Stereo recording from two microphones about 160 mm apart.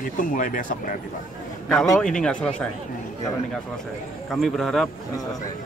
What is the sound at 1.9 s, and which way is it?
Speech, 5° left (ahead or behind).